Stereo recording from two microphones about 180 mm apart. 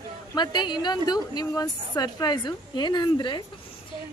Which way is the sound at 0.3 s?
25° left (ahead or behind).